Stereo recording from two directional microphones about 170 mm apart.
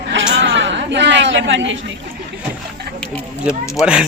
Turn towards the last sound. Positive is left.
turn(degrees=-5)  # may be behind; listen again after turning